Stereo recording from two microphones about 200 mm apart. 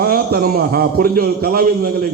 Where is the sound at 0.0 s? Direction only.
50° right (ahead or behind).